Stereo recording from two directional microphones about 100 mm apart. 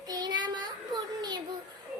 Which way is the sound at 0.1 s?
45° right (ahead or behind).